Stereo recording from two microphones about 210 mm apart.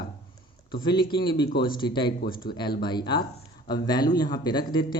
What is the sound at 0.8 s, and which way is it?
Speech, 20° left (ahead or behind).